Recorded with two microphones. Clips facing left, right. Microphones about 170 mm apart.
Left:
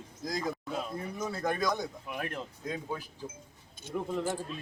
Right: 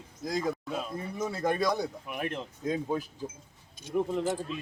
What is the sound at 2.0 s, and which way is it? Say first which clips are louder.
Speech: right 3 dB; 20° right (ahead or behind).